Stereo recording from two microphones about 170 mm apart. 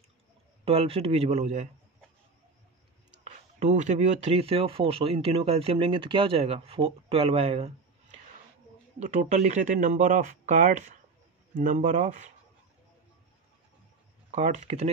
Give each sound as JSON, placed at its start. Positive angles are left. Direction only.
{"t": 0.7, "sound": "speech", "side_deg": -35}
{"t": 3.3, "sound": "speech", "side_deg": -45}
{"t": 9.0, "sound": "speech", "side_deg": -45}
{"t": 14.3, "sound": "speech", "side_deg": -45}